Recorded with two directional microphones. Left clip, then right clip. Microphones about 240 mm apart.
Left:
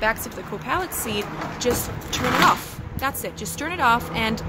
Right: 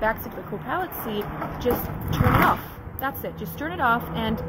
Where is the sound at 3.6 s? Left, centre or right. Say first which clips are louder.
Left 3 dB; centre.